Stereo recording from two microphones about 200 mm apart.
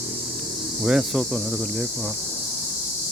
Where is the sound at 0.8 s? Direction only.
Centre (ahead or behind).